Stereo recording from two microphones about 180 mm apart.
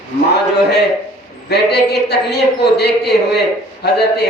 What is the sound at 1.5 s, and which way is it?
Speech, 65° left (ahead or behind).